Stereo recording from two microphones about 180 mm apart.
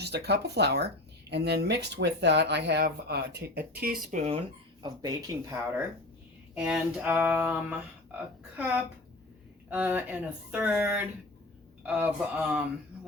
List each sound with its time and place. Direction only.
0.0 s speech: 65° right (ahead or behind)
4.1 s speech: 40° right (ahead or behind)
4.8 s speech: 20° right (ahead or behind)
6.5 s speech: 5° right (ahead or behind)